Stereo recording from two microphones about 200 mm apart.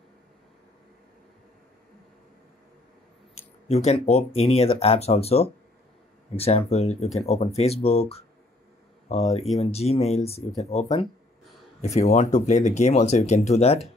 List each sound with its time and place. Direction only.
3.3 s speech: 35° left (ahead or behind)